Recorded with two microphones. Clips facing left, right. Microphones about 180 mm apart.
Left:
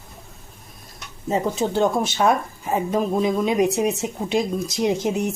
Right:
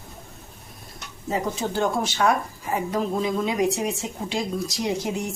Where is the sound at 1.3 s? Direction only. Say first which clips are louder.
Left 4 dB; 20° left (ahead or behind).